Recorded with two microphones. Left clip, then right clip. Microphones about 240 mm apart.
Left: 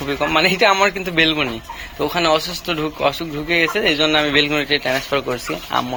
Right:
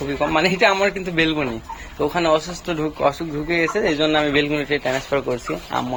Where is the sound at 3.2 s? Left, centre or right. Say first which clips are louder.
Left 3 dB; centre.